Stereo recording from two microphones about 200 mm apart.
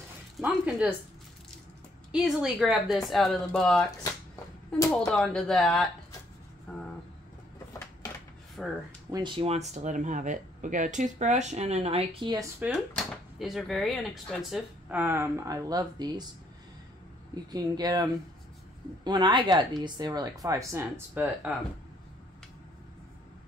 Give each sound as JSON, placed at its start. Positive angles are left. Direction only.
{"t": 0.4, "sound": "a sound", "side_deg": -5}
{"t": 2.1, "sound": "speech", "side_deg": 0}
{"t": 4.9, "sound": "speech", "side_deg": 5}
{"t": 8.6, "sound": "speech", "side_deg": 0}
{"t": 9.1, "sound": "speech", "side_deg": -25}
{"t": 12.9, "sound": "speech", "side_deg": 0}
{"t": 17.5, "sound": "speech", "side_deg": -20}
{"t": 19.0, "sound": "speech", "side_deg": -20}